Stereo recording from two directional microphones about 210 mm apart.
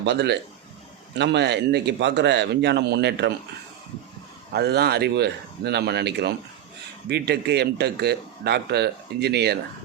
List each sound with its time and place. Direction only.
0.0 s speech: 55° right (ahead or behind)
4.5 s speech: 50° right (ahead or behind)